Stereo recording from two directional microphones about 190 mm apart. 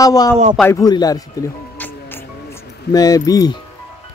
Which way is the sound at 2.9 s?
20° left (ahead or behind).